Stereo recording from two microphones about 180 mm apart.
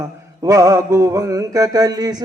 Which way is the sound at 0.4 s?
20° right (ahead or behind).